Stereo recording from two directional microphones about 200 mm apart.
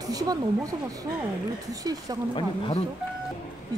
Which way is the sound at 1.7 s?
20° right (ahead or behind).